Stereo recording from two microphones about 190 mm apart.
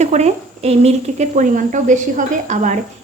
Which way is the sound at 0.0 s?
35° right (ahead or behind).